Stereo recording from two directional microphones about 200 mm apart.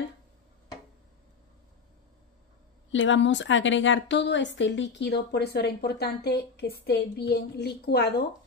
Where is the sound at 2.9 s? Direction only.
70° left (ahead or behind); by 8.2 s 50° left (ahead or behind).